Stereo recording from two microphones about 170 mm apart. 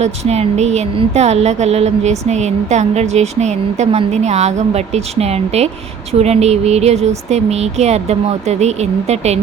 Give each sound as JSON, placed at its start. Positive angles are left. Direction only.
{"t": 0.0, "sound": "speech", "side_deg": -40}